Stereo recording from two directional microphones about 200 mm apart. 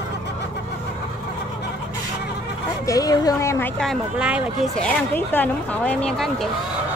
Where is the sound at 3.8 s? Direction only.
Centre (ahead or behind).